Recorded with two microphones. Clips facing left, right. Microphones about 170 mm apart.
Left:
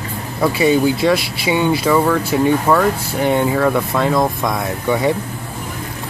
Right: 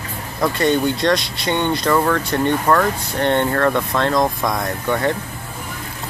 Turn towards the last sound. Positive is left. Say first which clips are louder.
# left 3 dB
turn(degrees=10)  # may be behind; listen again after turning